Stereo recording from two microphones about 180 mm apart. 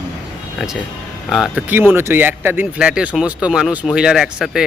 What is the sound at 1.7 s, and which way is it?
Speech, 10° right (ahead or behind).